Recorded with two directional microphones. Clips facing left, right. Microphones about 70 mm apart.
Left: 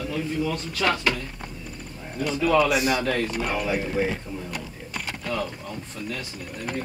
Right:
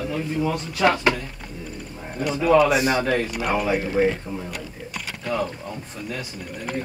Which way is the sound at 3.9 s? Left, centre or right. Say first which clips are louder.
Right 5 dB; centre.